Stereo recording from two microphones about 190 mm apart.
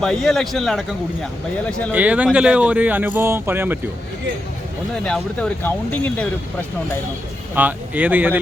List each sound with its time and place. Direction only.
0.0 s a man's voice: centre (ahead or behind)
1.9 s speech: 10° right (ahead or behind)
5.0 s a man's voice: 5° left (ahead or behind)
7.5 s speech: 10° right (ahead or behind)